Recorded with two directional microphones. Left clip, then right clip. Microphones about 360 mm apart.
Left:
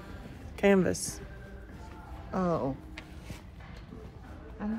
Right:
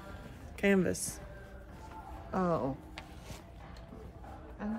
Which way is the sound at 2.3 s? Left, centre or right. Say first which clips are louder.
Left 2 dB; centre.